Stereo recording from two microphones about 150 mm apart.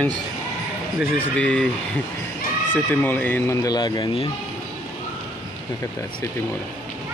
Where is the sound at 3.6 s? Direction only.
30° left (ahead or behind).